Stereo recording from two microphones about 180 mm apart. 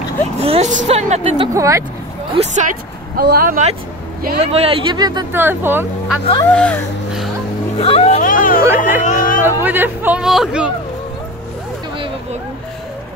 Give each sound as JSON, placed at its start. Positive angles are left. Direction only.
{"t": 0.4, "sound": "speech", "side_deg": -35}
{"t": 1.5, "sound": "speech", "side_deg": -15}
{"t": 2.3, "sound": "speech", "side_deg": -40}
{"t": 3.2, "sound": "speech", "side_deg": -55}
{"t": 4.4, "sound": "speech", "side_deg": -35}
{"t": 5.3, "sound": "speech", "side_deg": -10}
{"t": 6.2, "sound": "speech", "side_deg": 25}
{"t": 6.5, "sound": "speech", "side_deg": 5}
{"t": 7.8, "sound": "speech", "side_deg": 35}
{"t": 8.2, "sound": "speech", "side_deg": 50}
{"t": 9.4, "sound": "speech", "side_deg": -10}